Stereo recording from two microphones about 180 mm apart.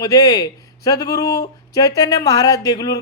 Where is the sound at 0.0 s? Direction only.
20° left (ahead or behind).